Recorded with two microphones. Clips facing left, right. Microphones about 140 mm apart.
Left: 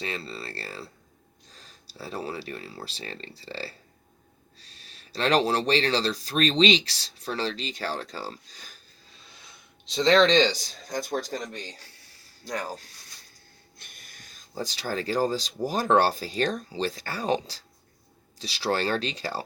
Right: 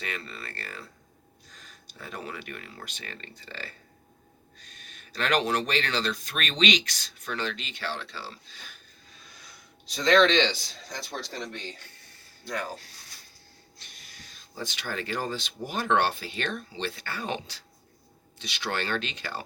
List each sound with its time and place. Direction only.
0.0 s speech: 30° left (ahead or behind)
9.2 s speech: 25° left (ahead or behind)
13.7 s speech: 50° left (ahead or behind); by 19.4 s 35° left (ahead or behind)